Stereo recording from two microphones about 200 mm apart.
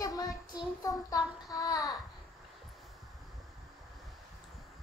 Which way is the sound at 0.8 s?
20° left (ahead or behind).